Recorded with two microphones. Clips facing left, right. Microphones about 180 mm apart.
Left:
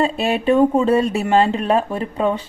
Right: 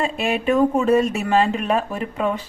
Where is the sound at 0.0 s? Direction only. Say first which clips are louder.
Left 3 dB; 35° left (ahead or behind).